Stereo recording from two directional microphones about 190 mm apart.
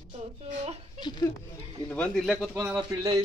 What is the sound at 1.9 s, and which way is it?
Speech, 5° left (ahead or behind).